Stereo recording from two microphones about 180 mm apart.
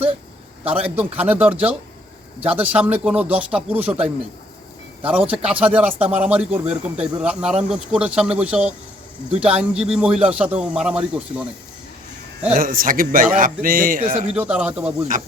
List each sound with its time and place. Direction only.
0.6 s speech: 10° right (ahead or behind)
12.5 s a man's voice: 50° right (ahead or behind)
14.3 s speech: 5° right (ahead or behind)
15.1 s a man's voice: 45° right (ahead or behind)